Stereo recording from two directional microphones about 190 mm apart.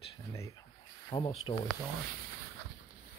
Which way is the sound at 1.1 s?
25° left (ahead or behind).